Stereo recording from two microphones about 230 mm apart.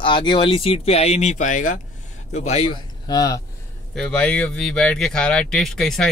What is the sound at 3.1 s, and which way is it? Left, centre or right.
Speech, centre.